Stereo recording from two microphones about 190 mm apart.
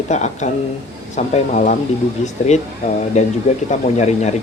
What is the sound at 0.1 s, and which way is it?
Speech, 35° left (ahead or behind).